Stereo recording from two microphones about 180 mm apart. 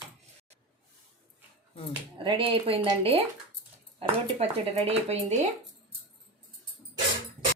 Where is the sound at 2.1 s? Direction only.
30° right (ahead or behind).